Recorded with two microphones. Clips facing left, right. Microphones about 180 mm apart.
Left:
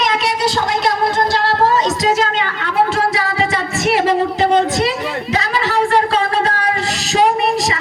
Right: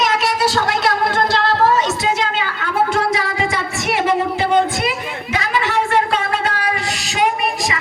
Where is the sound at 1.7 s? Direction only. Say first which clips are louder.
Left 2 dB; 40° left (ahead or behind).